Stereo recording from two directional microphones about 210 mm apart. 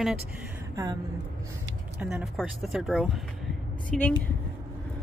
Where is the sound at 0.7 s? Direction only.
15° right (ahead or behind).